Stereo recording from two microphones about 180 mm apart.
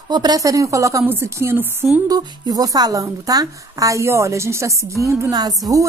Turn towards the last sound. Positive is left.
turn(degrees=-20)  # may be behind; listen again after turning